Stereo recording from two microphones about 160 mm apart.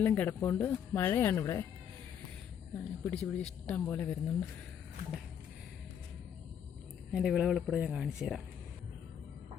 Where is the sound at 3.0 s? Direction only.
5° left (ahead or behind).